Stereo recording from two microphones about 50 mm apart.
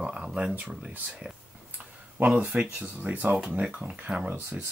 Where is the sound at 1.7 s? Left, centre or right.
Right.